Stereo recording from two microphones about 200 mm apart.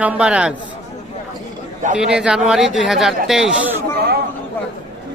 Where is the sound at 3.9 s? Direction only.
50° right (ahead or behind).